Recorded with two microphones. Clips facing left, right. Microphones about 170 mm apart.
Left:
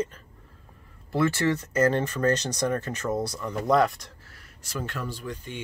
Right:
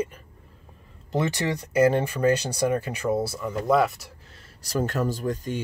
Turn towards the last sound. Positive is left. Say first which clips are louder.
# right 8 dB
turn(degrees=-40)  # may be behind; listen again after turning